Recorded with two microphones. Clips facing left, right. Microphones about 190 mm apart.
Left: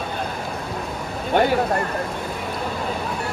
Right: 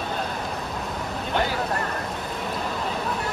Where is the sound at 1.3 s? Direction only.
55° left (ahead or behind).